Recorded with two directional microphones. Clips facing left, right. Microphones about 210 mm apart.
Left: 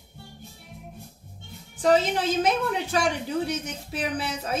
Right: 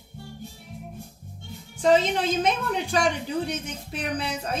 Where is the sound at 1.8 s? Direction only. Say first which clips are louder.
Right 1 dB; centre (ahead or behind).